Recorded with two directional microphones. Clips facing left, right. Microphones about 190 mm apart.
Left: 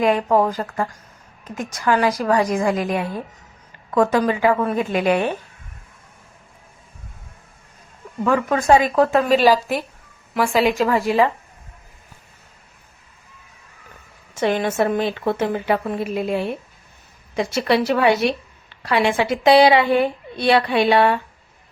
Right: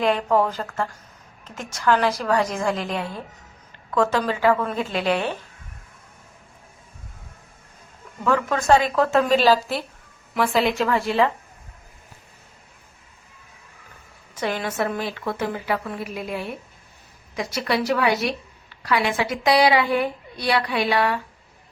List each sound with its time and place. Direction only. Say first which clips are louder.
0.1 s a woman's voice: left 3 dB; 15° left (ahead or behind)
8.2 s a woman's voice: left 3 dB; 15° left (ahead or behind)
14.3 s a woman's voice: left 6 dB; 25° left (ahead or behind)